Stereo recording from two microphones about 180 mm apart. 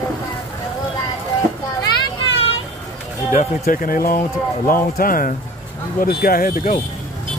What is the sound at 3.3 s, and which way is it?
Speech, 50° left (ahead or behind).